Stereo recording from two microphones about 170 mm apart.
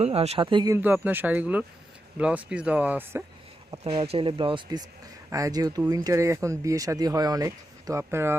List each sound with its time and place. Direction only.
0.0 s speech: 35° right (ahead or behind)
0.8 s speech: 10° right (ahead or behind)
3.8 s speech: 35° right (ahead or behind); by 8.4 s 15° right (ahead or behind)